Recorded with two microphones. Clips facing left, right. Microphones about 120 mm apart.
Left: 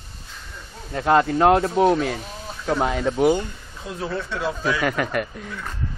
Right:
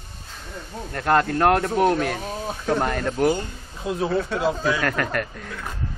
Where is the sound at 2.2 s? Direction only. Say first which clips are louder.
Right 6 dB; 50° right (ahead or behind).